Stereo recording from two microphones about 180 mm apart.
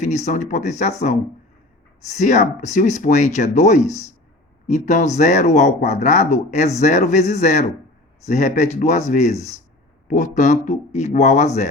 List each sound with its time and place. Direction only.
0.0 s speech: 40° left (ahead or behind)